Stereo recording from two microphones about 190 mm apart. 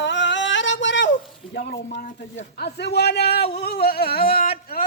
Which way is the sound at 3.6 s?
55° left (ahead or behind).